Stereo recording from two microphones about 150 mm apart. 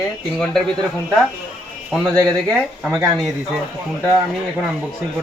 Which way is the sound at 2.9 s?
Centre (ahead or behind).